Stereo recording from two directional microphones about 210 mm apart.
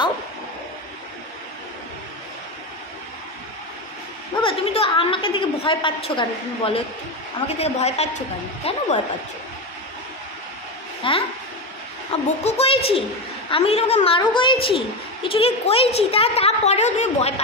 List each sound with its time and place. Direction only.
4.4 s a woman's voice: 25° left (ahead or behind)
11.0 s a woman's voice: 25° left (ahead or behind)